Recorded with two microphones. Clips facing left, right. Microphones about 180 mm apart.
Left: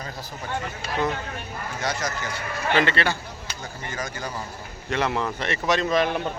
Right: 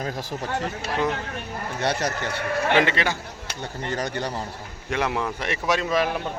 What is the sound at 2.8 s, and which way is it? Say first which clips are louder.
Speech: even; 15° right (ahead or behind).